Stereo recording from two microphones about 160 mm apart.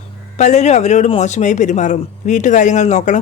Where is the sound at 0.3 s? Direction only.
45° left (ahead or behind).